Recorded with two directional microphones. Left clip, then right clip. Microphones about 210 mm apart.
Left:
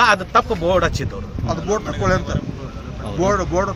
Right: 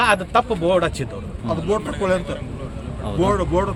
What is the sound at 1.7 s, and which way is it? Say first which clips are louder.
Speech: left 1 dB; 20° right (ahead or behind).